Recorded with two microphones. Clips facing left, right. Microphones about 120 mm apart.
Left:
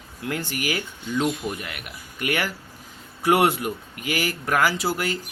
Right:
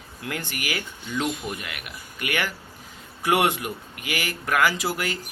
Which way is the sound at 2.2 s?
35° left (ahead or behind).